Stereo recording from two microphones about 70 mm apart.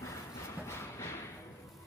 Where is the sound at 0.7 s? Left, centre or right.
Left.